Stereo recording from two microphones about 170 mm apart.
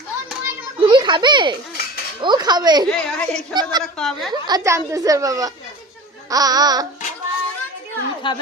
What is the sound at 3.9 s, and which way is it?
Speech, 5° left (ahead or behind).